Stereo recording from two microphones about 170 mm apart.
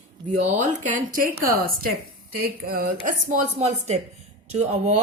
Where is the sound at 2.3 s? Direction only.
60° right (ahead or behind).